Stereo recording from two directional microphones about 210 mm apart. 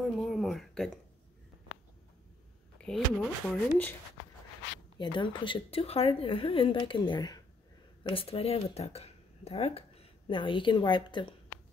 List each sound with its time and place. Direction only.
0.0 s a sound: centre (ahead or behind)
2.8 s speech: centre (ahead or behind)
4.9 s a woman's voice: 20° left (ahead or behind)